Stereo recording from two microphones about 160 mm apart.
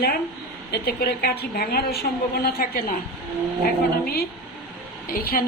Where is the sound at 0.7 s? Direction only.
80° left.